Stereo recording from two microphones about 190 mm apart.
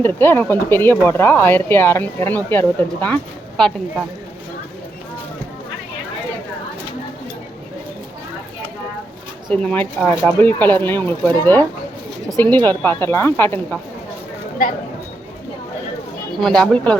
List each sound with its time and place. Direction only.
0.0 s speech: 10° left (ahead or behind)
9.5 s speech: 5° left (ahead or behind)
14.6 s speech: 45° left (ahead or behind)
16.3 s speech: 5° left (ahead or behind)